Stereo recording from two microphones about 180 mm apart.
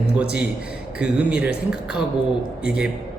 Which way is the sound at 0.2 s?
5° right (ahead or behind).